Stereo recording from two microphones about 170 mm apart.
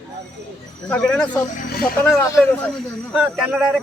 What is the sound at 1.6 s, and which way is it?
Speech, 60° left (ahead or behind).